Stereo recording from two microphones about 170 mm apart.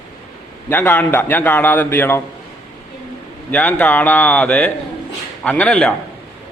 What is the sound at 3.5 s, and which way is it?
A man's voice, 10° left (ahead or behind).